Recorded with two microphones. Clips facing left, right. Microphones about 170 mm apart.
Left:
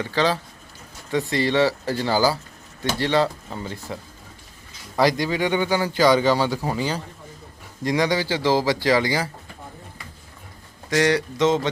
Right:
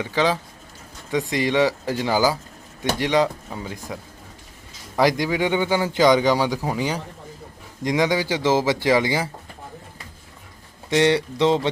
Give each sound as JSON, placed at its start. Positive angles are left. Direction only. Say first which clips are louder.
{"t": 0.0, "sound": "speech", "louder": "right 1 dB", "side_deg": -15}
{"t": 4.9, "sound": "a man's voice", "louder": "right 1 dB", "side_deg": -15}
{"t": 10.8, "sound": "a man's voice", "louder": "right 2 dB", "side_deg": -25}